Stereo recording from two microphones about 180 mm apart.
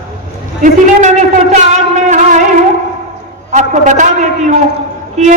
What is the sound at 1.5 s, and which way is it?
Speech, 40° right (ahead or behind).